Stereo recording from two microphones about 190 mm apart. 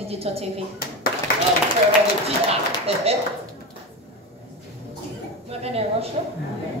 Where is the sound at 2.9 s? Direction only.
30° right (ahead or behind).